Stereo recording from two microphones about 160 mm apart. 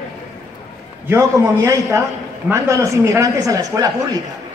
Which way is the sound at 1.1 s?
20° right (ahead or behind).